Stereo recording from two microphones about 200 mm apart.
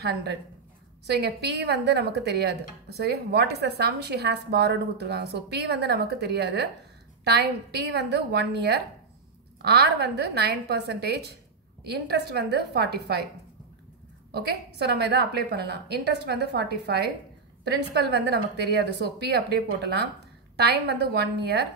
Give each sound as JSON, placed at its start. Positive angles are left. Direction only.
{"t": 0.0, "sound": "a woman's voice", "side_deg": -55}
{"t": 14.3, "sound": "speech", "side_deg": -55}